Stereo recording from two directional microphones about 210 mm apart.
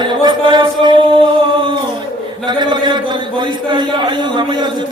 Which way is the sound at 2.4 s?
20° right (ahead or behind).